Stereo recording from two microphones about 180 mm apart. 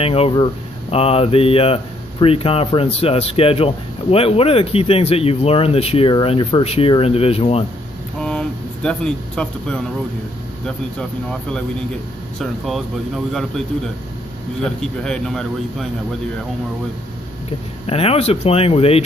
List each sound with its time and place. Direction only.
0.0 s speech: 30° left (ahead or behind)
8.2 s a sound: 5° left (ahead or behind)
12.4 s speech: centre (ahead or behind)
14.6 s speech: 5° left (ahead or behind)
17.5 s speech: 35° left (ahead or behind)